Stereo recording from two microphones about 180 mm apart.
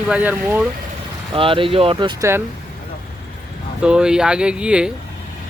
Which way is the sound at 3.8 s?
5° right (ahead or behind).